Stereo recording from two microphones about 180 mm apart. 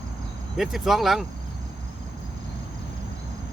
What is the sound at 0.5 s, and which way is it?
Speech, centre (ahead or behind).